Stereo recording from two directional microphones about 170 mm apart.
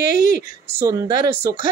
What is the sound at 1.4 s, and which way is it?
Speech, 50° left (ahead or behind).